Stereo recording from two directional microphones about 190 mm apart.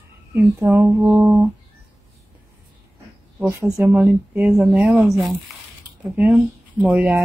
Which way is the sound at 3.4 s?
10° right (ahead or behind).